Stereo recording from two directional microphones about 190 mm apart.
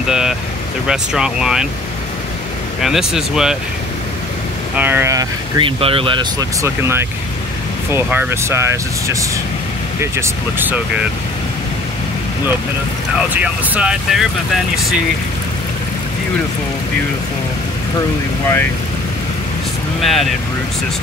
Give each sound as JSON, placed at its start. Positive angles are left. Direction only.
{"t": 0.1, "sound": "speech", "side_deg": -5}
{"t": 2.8, "sound": "speech", "side_deg": 0}
{"t": 4.7, "sound": "speech", "side_deg": -10}
{"t": 6.6, "sound": "speech", "side_deg": -15}
{"t": 13.3, "sound": "speech", "side_deg": -5}
{"t": 20.0, "sound": "speech", "side_deg": 0}